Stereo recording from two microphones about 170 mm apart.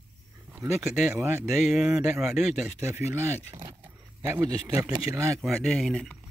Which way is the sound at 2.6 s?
15° right (ahead or behind).